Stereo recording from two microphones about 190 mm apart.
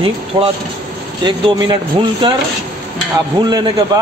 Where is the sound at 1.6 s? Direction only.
25° right (ahead or behind).